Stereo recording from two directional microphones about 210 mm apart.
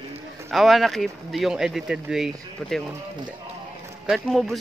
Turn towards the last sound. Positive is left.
turn(degrees=0)  # may be behind; listen again after turning